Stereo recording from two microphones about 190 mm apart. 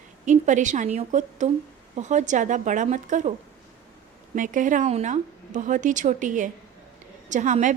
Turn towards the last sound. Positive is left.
turn(degrees=-40)  # may be behind; listen again after turning